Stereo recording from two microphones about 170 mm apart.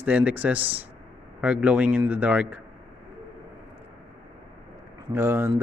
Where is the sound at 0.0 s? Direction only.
10° right (ahead or behind).